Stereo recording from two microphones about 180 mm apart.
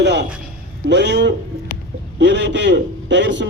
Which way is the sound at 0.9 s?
70° right (ahead or behind).